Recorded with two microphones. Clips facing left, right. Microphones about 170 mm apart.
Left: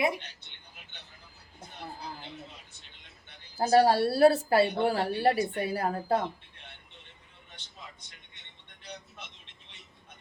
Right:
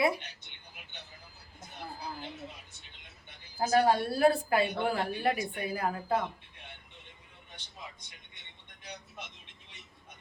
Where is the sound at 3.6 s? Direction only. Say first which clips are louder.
Left 4 dB; 35° left (ahead or behind).